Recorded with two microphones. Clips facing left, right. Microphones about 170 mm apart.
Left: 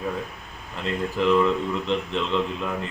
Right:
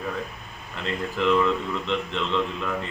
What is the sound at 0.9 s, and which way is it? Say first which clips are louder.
A man's voice: left 2 dB; centre (ahead or behind).